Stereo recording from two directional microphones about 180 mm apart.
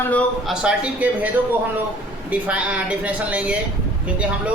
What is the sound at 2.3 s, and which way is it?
Speech, 5° right (ahead or behind).